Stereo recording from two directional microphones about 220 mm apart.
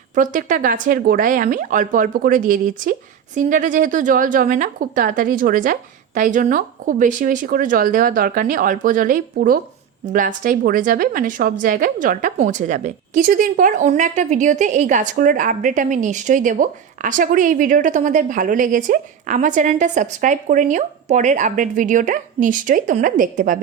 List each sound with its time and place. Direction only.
0.1 s a woman's voice: 35° right (ahead or behind)